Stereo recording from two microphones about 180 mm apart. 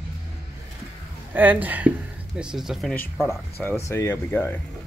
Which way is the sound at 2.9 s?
15° left (ahead or behind).